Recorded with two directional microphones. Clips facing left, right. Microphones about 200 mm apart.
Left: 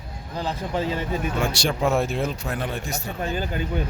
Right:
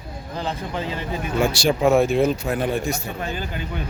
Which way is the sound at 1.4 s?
5° right (ahead or behind).